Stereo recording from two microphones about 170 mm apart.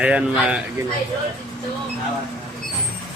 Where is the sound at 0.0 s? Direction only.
10° right (ahead or behind).